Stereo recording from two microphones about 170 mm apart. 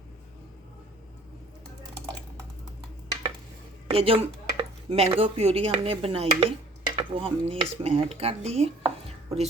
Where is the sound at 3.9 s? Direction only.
35° right (ahead or behind).